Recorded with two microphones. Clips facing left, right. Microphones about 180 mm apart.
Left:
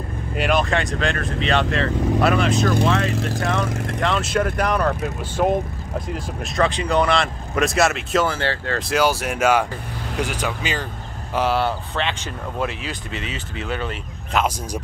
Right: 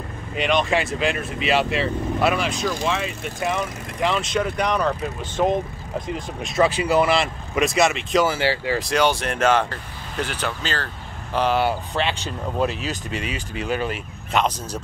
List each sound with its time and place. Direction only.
0.4 s speech: 5° left (ahead or behind)
3.1 s speech: 90° left
3.3 s speech: 5° right (ahead or behind)
11.6 s speech: 10° right (ahead or behind)
13.7 s speech: 10° right (ahead or behind)
14.3 s speech: 5° left (ahead or behind)